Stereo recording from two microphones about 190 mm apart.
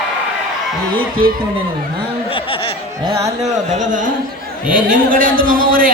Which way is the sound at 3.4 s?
40° right (ahead or behind).